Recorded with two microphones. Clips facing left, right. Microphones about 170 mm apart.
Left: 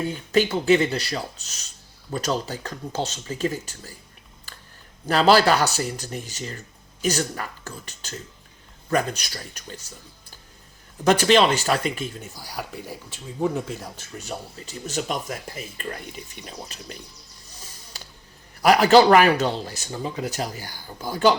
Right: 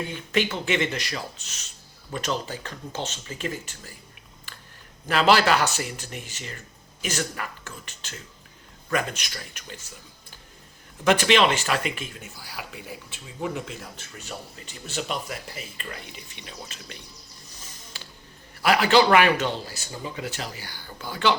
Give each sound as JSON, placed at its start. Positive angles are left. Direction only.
{"t": 0.1, "sound": "speech", "side_deg": 40}
{"t": 5.0, "sound": "speech", "side_deg": 35}
{"t": 11.0, "sound": "speech", "side_deg": 40}
{"t": 18.6, "sound": "speech", "side_deg": 40}